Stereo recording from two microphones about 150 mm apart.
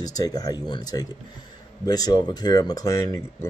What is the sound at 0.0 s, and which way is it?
Speech, 25° left (ahead or behind).